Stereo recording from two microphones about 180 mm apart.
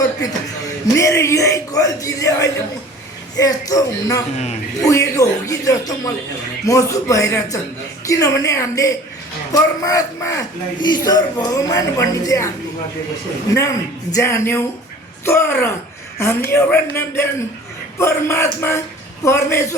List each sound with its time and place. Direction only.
0.9 s speech: 15° left (ahead or behind)
13.5 s a woman's voice: 15° left (ahead or behind)